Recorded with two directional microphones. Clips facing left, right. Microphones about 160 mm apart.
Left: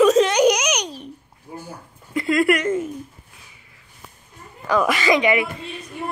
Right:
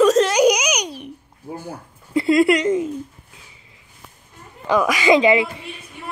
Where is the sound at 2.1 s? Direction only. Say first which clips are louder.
Right 3 dB; 25° right (ahead or behind).